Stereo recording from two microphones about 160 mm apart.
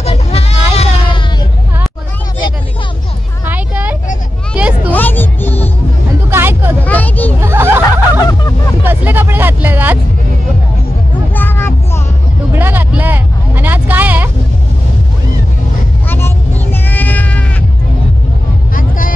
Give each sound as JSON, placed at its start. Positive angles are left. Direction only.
{"t": 0.0, "sound": "vehicle", "side_deg": 40}
{"t": 3.4, "sound": "vehicle", "side_deg": -10}
{"t": 4.6, "sound": "a sound", "side_deg": -10}
{"t": 4.9, "sound": "music", "side_deg": 10}
{"t": 6.3, "sound": "hubbub", "side_deg": -15}
{"t": 6.8, "sound": "a sound", "side_deg": 10}
{"t": 7.4, "sound": "snicker", "side_deg": -15}
{"t": 8.2, "sound": "vehicle", "side_deg": 20}
{"t": 8.8, "sound": "music", "side_deg": -10}
{"t": 11.3, "sound": "a sound", "side_deg": 15}
{"t": 12.5, "sound": "a sound", "side_deg": -10}
{"t": 16.1, "sound": "music", "side_deg": 15}
{"t": 18.8, "sound": "vehicle", "side_deg": 60}